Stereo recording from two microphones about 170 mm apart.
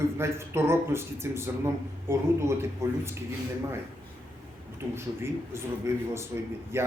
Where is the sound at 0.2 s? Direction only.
15° right (ahead or behind).